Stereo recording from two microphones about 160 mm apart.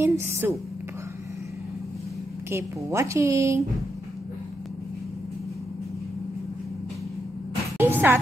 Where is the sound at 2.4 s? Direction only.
15° right (ahead or behind).